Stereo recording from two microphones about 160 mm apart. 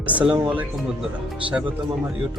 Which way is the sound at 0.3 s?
30° right (ahead or behind).